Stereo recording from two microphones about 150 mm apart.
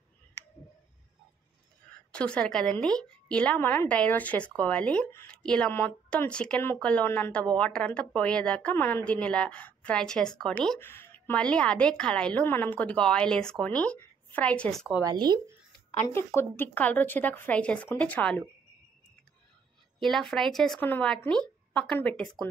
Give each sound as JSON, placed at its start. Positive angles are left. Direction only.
{"t": 2.1, "sound": "a woman's voice", "side_deg": 5}
{"t": 15.0, "sound": "speech", "side_deg": -30}
{"t": 16.0, "sound": "a woman's voice", "side_deg": 15}
{"t": 20.0, "sound": "a woman's voice", "side_deg": 0}